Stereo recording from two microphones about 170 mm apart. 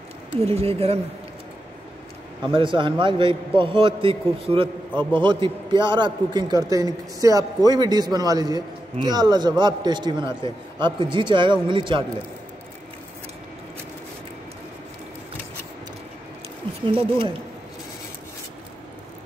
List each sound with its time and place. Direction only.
0.5 s speech: 35° right (ahead or behind)
2.4 s a man's voice: 30° right (ahead or behind)
16.8 s speech: 30° right (ahead or behind)